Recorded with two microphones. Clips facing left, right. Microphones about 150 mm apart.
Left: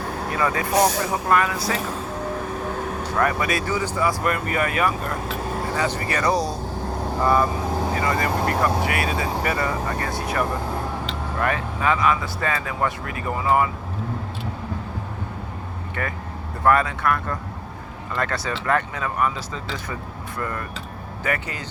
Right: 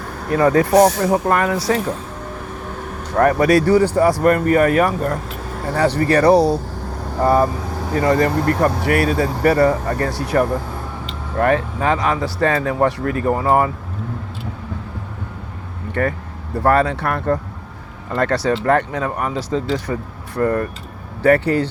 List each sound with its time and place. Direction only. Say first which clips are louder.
0.3 s speech: right 9 dB; 45° right (ahead or behind)
3.2 s speech: right 10 dB; 45° right (ahead or behind)
3.8 s speech: right 11 dB; 65° right (ahead or behind)
4.2 s speech: right 9 dB; 45° right (ahead or behind)
5.7 s speech: right 12 dB; 60° right (ahead or behind)
7.2 s speech: right 5 dB; 40° right (ahead or behind)
16.0 s speech: right 9 dB; 40° right (ahead or behind)
19.2 s speech: right 4 dB; 70° right (ahead or behind)
19.9 s speech: right 7 dB; 40° right (ahead or behind)